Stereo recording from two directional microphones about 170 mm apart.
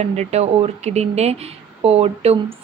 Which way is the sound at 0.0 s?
40° right (ahead or behind).